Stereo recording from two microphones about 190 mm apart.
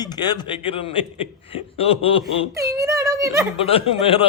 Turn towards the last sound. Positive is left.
turn(degrees=30)  # may be behind; listen again after turning